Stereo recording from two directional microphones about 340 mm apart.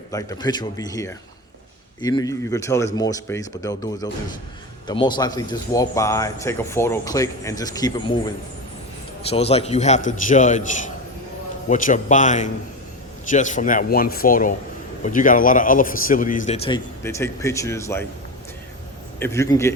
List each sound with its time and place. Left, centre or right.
0.1 s speech: centre
9.3 s a man's voice: centre
19.2 s speech: centre